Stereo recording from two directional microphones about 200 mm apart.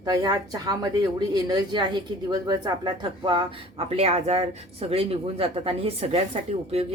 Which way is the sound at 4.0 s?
30° right (ahead or behind).